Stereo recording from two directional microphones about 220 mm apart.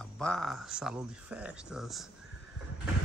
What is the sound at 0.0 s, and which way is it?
Speech, 5° left (ahead or behind).